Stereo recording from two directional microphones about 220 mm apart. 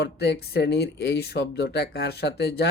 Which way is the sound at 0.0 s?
50° left (ahead or behind).